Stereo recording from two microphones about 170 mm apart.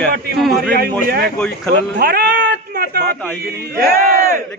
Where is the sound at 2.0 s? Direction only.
75° right (ahead or behind).